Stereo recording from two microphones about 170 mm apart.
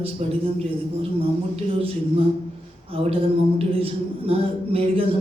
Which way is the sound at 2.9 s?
35° right (ahead or behind).